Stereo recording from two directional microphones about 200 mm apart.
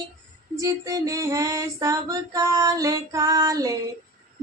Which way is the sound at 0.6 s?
15° right (ahead or behind).